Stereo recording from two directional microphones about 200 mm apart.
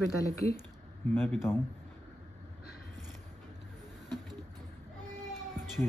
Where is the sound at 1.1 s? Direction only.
10° left (ahead or behind).